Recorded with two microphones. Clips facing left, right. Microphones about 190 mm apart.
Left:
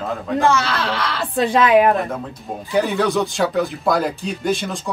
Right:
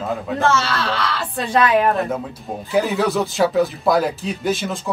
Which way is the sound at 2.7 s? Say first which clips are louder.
Even; 5° right (ahead or behind).